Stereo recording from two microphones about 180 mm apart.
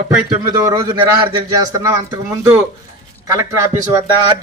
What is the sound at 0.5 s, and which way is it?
A man's voice, 20° right (ahead or behind).